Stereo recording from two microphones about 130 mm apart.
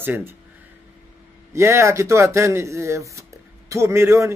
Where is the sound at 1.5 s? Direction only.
20° right (ahead or behind).